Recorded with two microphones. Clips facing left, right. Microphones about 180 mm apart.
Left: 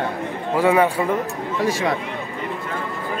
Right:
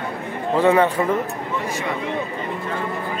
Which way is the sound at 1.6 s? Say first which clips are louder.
Left 7 dB; 90° left.